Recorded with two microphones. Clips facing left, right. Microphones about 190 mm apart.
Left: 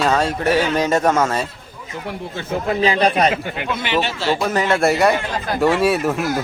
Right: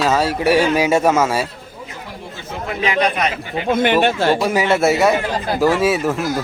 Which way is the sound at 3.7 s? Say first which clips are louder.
Right 7 dB; 50° right (ahead or behind).